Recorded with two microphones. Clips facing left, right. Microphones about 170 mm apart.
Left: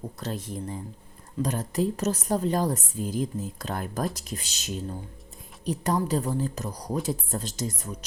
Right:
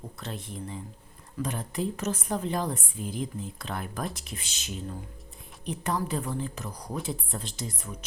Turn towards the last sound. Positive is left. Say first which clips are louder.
# left 5 dB
turn(degrees=40)  # may be behind; listen again after turning